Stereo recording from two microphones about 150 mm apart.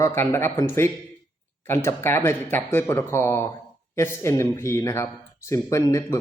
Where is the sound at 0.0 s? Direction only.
20° left (ahead or behind).